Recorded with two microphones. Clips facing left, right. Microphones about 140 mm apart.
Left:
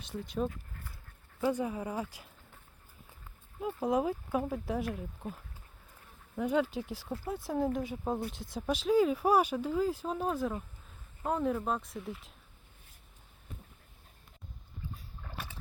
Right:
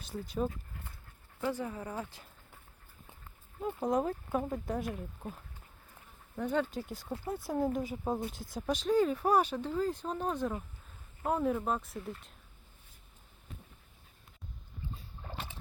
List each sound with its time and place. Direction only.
0.0 s speech: centre (ahead or behind)
1.4 s speech: 15° left (ahead or behind)
3.6 s speech: 5° left (ahead or behind)
6.3 s speech: 5° left (ahead or behind)
14.9 s boat: 25° right (ahead or behind)